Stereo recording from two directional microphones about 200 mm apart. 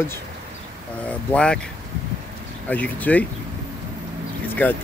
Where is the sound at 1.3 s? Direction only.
5° left (ahead or behind).